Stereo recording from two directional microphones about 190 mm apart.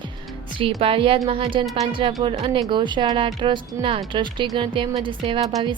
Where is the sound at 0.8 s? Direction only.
30° right (ahead or behind).